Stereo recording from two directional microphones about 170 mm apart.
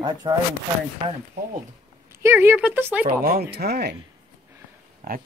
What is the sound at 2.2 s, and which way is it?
Speech, 15° right (ahead or behind).